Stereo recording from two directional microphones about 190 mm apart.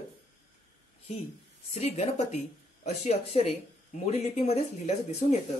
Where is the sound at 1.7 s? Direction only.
35° left (ahead or behind).